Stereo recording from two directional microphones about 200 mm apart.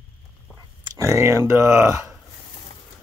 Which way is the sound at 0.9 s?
15° right (ahead or behind).